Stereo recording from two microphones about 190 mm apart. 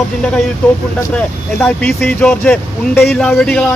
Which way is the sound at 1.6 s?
10° left (ahead or behind).